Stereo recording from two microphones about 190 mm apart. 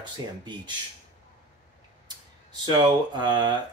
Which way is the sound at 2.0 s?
20° right (ahead or behind).